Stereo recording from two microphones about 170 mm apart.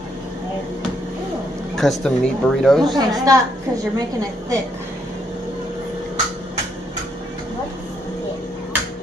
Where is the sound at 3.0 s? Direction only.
20° right (ahead or behind).